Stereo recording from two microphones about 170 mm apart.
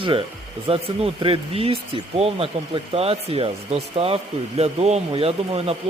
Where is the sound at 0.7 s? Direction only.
35° right (ahead or behind).